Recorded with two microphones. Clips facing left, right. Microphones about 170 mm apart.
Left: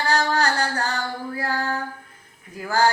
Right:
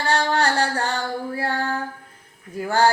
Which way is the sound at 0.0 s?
30° right (ahead or behind).